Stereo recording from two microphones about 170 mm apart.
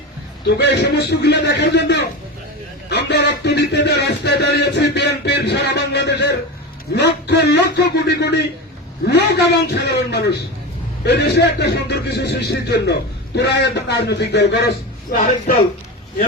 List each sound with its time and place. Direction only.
0.4 s speech: 80° left
15.1 s speech: 50° left (ahead or behind)